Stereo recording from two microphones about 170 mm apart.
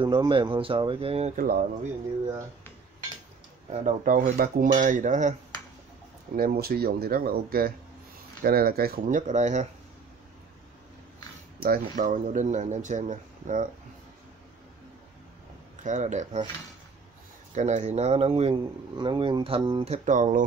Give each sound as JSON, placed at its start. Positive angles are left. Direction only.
{"t": 0.0, "sound": "speech", "side_deg": -30}
{"t": 1.3, "sound": "speech", "side_deg": -55}
{"t": 3.7, "sound": "speech", "side_deg": -50}
{"t": 6.3, "sound": "speech", "side_deg": -60}
{"t": 11.9, "sound": "speech", "side_deg": -50}
{"t": 15.8, "sound": "speech", "side_deg": -45}
{"t": 17.6, "sound": "speech", "side_deg": -45}
{"t": 19.9, "sound": "speech", "side_deg": -45}